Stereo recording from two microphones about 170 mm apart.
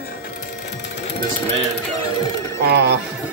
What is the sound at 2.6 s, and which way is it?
Speech, 80° right.